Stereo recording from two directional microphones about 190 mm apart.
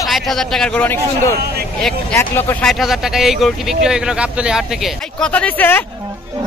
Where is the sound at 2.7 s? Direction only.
Centre (ahead or behind).